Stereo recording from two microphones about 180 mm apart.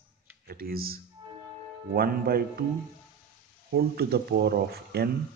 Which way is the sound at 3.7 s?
60° right (ahead or behind).